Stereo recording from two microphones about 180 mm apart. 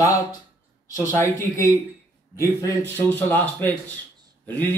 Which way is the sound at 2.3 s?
15° left (ahead or behind).